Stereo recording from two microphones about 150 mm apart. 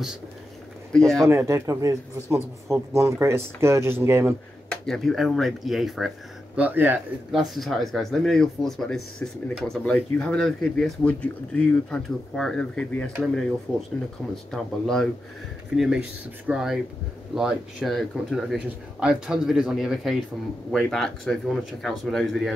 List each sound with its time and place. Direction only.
0.9 s speech: 5° left (ahead or behind)
1.2 s speech: 20° right (ahead or behind)
4.6 s speech: 5° left (ahead or behind); by 7.0 s 15° right (ahead or behind)
7.3 s speech: centre (ahead or behind)